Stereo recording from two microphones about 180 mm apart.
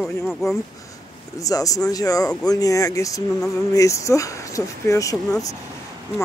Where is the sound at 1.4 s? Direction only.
20° left (ahead or behind).